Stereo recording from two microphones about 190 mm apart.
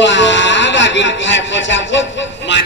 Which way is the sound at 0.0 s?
75° left (ahead or behind).